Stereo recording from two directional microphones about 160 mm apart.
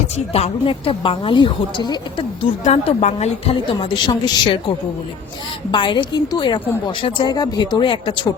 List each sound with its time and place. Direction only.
0.3 s a woman's voice: 35° left (ahead or behind)
2.6 s a woman's voice: 45° left (ahead or behind); by 4.6 s 30° left (ahead or behind)
5.7 s a woman's voice: 30° left (ahead or behind)